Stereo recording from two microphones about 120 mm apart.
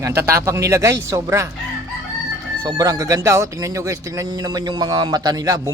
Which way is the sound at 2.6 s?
30° right (ahead or behind).